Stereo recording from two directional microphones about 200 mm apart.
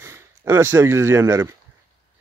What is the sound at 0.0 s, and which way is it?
Speech, 10° right (ahead or behind).